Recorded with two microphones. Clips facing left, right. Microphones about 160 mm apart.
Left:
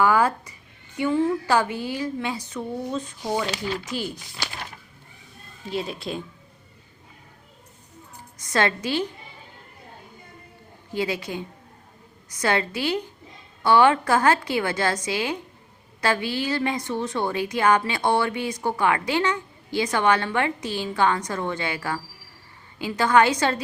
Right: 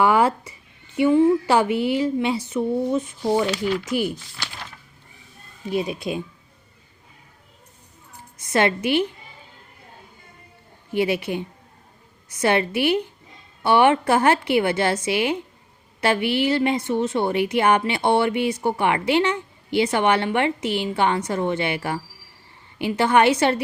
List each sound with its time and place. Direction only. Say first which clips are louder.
0.0 s a woman's voice: right 2 dB; 25° right (ahead or behind)
5.6 s a woman's voice: right 5 dB; 20° right (ahead or behind)
8.4 s a woman's voice: right 3 dB; 20° right (ahead or behind)
10.9 s a woman's voice: right 5 dB; 25° right (ahead or behind)